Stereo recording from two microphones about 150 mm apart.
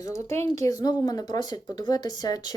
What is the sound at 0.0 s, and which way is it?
Speech, 20° left (ahead or behind).